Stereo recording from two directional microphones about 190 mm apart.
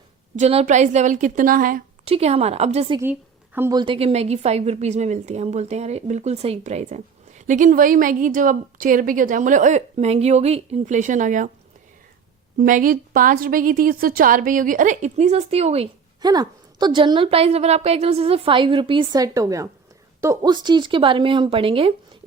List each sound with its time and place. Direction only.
0.3 s a woman's voice: 35° right (ahead or behind)
2.0 s a woman's voice: 30° right (ahead or behind)
3.0 s a woman's voice: 10° right (ahead or behind)
3.8 s a woman's voice: 30° right (ahead or behind)
12.5 s a woman's voice: 45° right (ahead or behind)
16.2 s a woman's voice: 20° right (ahead or behind)